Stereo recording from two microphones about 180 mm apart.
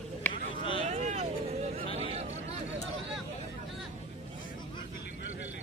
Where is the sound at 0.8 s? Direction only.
40° right (ahead or behind).